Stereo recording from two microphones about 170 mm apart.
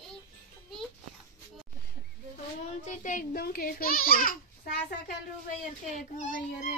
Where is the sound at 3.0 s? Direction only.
50° left (ahead or behind).